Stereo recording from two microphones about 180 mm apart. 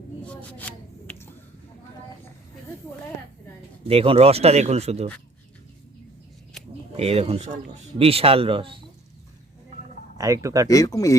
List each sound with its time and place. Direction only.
3.8 s speech: 35° right (ahead or behind)
6.9 s speech: 35° right (ahead or behind)
10.2 s speech: 20° right (ahead or behind)
10.7 s speech: 20° left (ahead or behind)